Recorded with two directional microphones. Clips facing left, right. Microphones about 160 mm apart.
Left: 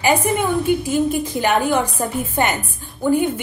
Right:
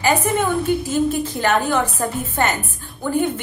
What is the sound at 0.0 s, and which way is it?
A woman's voice, 15° left (ahead or behind).